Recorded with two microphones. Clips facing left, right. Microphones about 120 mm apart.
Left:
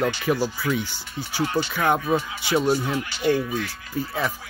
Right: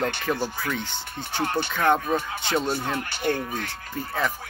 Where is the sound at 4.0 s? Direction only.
5° left (ahead or behind).